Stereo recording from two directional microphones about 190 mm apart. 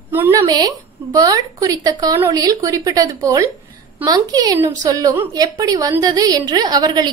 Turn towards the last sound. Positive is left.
turn(degrees=-20)  # may be behind; listen again after turning